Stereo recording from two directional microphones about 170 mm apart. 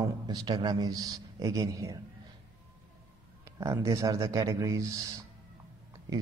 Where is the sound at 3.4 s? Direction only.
20° right (ahead or behind).